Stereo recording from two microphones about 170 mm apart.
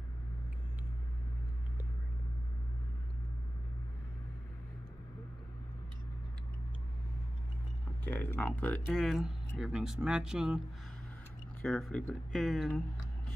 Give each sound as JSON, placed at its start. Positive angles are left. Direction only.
{"t": 8.0, "sound": "speech", "side_deg": 10}
{"t": 11.6, "sound": "speech", "side_deg": 0}